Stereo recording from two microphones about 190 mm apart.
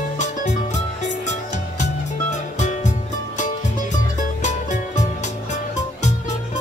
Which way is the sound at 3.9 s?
40° left (ahead or behind).